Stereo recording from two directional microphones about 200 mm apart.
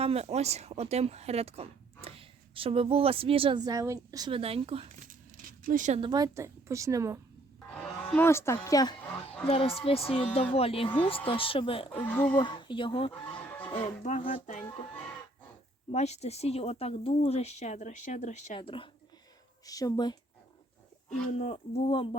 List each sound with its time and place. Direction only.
0.0 s speech: 30° right (ahead or behind)
6.0 s speech: 20° right (ahead or behind)
7.7 s speech: 5° left (ahead or behind)
9.5 s speech: 30° left (ahead or behind)
12.0 s speech: 10° left (ahead or behind)
12.4 s speech: 25° left (ahead or behind)
13.2 s music: 5° left (ahead or behind)
13.7 s speech: 30° left (ahead or behind)
15.9 s speech: 35° left (ahead or behind)
21.3 s speech: 35° left (ahead or behind)